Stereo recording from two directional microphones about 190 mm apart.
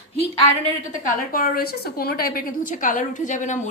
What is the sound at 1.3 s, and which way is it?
A woman's voice, 50° left (ahead or behind).